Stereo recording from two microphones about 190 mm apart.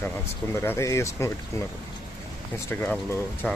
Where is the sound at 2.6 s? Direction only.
10° left (ahead or behind).